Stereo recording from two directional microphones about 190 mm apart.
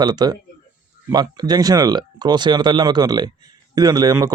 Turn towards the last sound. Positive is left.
turn(degrees=-20)  # may be behind; listen again after turning